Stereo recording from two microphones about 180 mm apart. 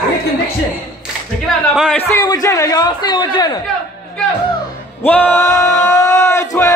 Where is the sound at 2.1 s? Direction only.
20° left (ahead or behind).